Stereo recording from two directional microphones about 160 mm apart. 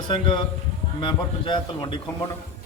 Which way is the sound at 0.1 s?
30° left (ahead or behind).